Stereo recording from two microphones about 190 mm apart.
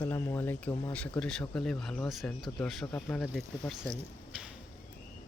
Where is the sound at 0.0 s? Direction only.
10° left (ahead or behind).